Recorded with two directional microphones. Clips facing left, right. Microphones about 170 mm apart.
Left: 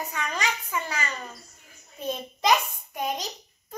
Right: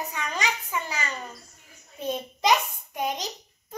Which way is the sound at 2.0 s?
10° right (ahead or behind).